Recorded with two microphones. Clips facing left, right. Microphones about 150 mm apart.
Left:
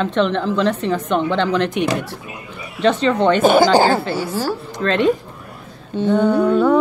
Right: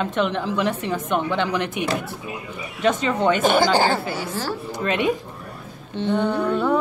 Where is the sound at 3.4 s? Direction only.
15° left (ahead or behind).